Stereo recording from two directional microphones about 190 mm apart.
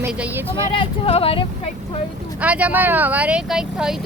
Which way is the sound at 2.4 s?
10° right (ahead or behind).